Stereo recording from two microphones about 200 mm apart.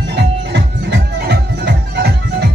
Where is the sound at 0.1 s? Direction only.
55° right (ahead or behind).